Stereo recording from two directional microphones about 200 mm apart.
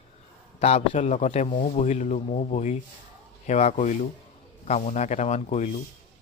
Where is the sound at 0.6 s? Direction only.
35° left (ahead or behind).